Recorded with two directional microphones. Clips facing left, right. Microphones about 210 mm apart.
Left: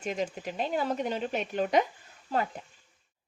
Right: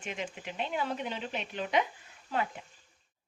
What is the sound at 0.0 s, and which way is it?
Speech, 40° left (ahead or behind).